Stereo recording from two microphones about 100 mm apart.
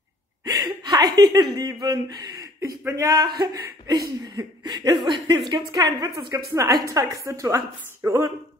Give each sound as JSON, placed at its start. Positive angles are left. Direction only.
{"t": 0.5, "sound": "chuckle", "side_deg": -40}
{"t": 1.8, "sound": "a woman's voice", "side_deg": -45}